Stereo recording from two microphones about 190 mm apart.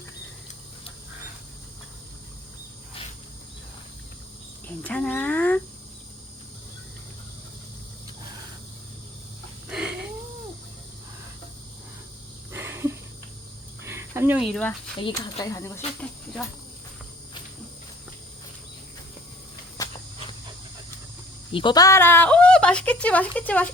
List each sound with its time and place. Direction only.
4.9 s speech: 10° left (ahead or behind)
9.6 s cat: 5° right (ahead or behind)
12.5 s a sound: 15° right (ahead or behind)
15.1 s speech: 20° left (ahead or behind)
19.8 s a sound: 20° left (ahead or behind)
21.5 s speech: 25° left (ahead or behind); by 23.7 s 5° left (ahead or behind)